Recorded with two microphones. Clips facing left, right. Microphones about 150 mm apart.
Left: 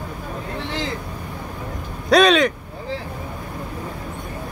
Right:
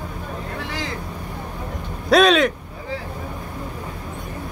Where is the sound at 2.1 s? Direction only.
Centre (ahead or behind).